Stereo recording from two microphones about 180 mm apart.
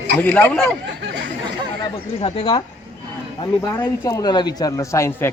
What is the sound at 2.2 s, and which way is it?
Speech, 35° left (ahead or behind).